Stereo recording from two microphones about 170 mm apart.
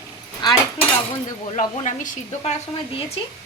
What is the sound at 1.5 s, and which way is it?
Speech, 50° left (ahead or behind).